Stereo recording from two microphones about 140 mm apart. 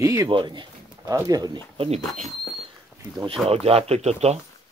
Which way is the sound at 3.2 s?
40° right (ahead or behind).